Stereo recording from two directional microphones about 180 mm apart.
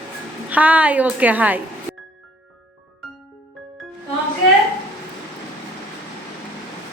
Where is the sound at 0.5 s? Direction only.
10° right (ahead or behind).